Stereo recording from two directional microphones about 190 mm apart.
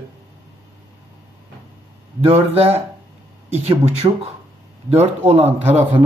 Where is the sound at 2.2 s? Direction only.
30° right (ahead or behind).